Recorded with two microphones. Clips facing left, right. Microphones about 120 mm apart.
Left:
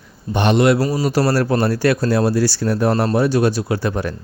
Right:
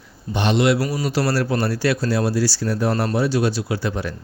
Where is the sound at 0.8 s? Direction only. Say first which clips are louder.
Left 4 dB; 30° left (ahead or behind).